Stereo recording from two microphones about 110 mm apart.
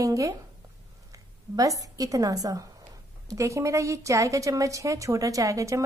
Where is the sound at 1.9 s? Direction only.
30° right (ahead or behind).